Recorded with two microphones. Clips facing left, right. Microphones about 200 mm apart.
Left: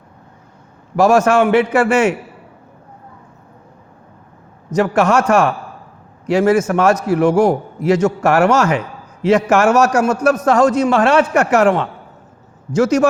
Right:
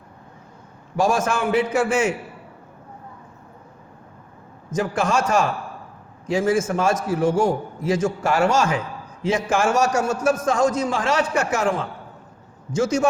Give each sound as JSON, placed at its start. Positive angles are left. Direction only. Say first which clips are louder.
{"t": 0.9, "sound": "a man's voice", "louder": "left 9 dB", "side_deg": 70}
{"t": 4.8, "sound": "a man's voice", "louder": "left 7 dB", "side_deg": 70}